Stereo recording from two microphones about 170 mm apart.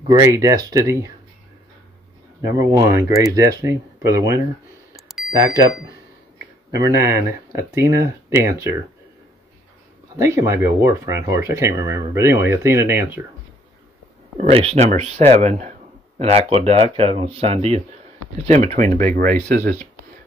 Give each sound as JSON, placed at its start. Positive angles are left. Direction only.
{"t": 0.1, "sound": "speech", "side_deg": -20}
{"t": 2.4, "sound": "speech", "side_deg": -20}
{"t": 5.0, "sound": "bicycle bell", "side_deg": 0}
{"t": 5.3, "sound": "speech", "side_deg": -20}
{"t": 6.7, "sound": "speech", "side_deg": -20}
{"t": 10.1, "sound": "speech", "side_deg": -15}
{"t": 14.5, "sound": "speech", "side_deg": -35}